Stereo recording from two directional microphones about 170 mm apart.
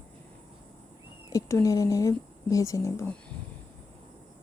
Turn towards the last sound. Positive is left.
turn(degrees=15)  # may be behind; listen again after turning